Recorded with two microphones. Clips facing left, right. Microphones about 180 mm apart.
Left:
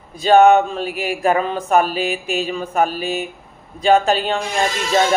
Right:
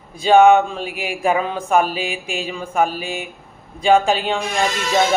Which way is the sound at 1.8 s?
45° left (ahead or behind).